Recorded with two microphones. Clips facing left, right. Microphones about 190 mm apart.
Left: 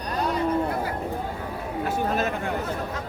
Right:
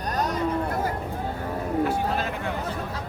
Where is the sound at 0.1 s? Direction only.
45° right (ahead or behind).